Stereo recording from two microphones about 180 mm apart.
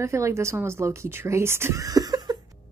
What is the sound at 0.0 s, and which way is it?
A woman's voice, 15° right (ahead or behind).